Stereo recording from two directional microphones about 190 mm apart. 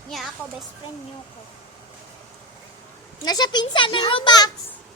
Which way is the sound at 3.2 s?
20° left (ahead or behind).